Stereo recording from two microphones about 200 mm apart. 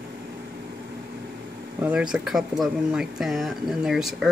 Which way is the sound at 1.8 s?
5° right (ahead or behind).